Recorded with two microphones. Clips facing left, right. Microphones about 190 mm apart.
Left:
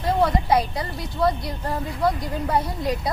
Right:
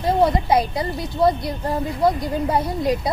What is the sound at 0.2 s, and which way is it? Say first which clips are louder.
A woman's voice: right 2 dB; 20° right (ahead or behind).